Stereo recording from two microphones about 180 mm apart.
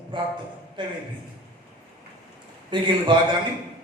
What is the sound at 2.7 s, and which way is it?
Speech, 25° right (ahead or behind).